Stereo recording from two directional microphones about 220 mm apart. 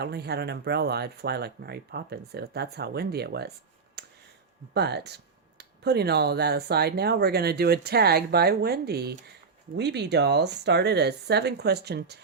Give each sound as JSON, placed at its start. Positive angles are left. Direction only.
{"t": 0.0, "sound": "speech", "side_deg": -45}
{"t": 4.0, "sound": "a sound", "side_deg": -50}
{"t": 4.7, "sound": "speech", "side_deg": -50}